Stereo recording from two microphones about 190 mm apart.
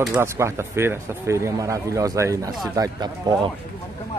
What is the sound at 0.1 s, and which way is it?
Speech, 15° right (ahead or behind).